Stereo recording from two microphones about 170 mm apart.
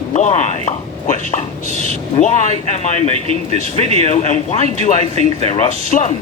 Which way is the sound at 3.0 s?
35° right (ahead or behind).